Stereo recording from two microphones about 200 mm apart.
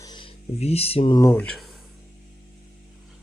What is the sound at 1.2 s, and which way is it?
Speech, 10° left (ahead or behind).